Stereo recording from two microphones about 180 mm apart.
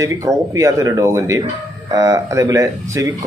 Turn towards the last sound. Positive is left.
turn(degrees=-20)  # may be behind; listen again after turning